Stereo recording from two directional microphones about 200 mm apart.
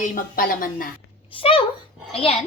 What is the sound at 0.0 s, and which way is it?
Speech, 45° left (ahead or behind).